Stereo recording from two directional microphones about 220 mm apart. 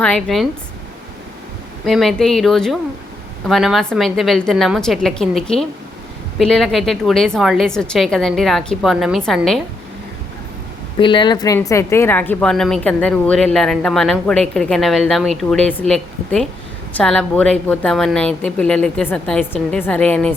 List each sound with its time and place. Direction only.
0.0 s a woman's voice: 5° left (ahead or behind)
1.8 s a woman's voice: centre (ahead or behind)
11.0 s a woman's voice: 20° left (ahead or behind); by 20.3 s 5° left (ahead or behind)